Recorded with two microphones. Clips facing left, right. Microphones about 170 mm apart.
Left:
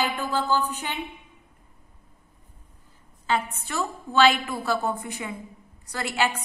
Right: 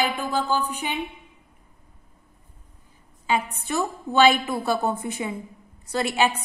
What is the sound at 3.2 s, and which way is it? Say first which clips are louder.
A woman's voice: right 1 dB; 15° right (ahead or behind).